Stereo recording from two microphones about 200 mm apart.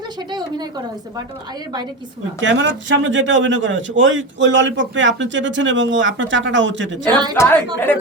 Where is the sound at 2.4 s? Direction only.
65° right (ahead or behind).